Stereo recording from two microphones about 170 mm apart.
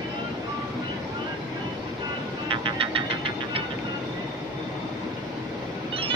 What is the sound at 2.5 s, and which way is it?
Vehicle, 30° right (ahead or behind).